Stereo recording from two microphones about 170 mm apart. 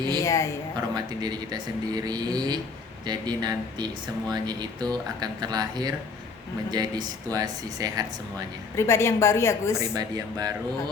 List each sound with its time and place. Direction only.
0.1 s a woman's voice: 20° left (ahead or behind)
0.9 s speech: 25° right (ahead or behind)
8.7 s a woman's voice: 15° left (ahead or behind)
9.9 s speech: 20° right (ahead or behind)